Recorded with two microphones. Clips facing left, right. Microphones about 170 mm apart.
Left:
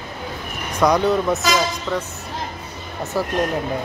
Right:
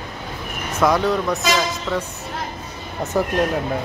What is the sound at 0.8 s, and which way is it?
Speech, centre (ahead or behind).